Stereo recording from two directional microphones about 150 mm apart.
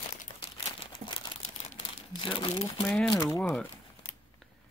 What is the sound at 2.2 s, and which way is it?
Speech, 40° left (ahead or behind).